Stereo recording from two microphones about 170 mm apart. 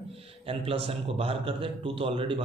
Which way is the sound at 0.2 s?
35° right (ahead or behind).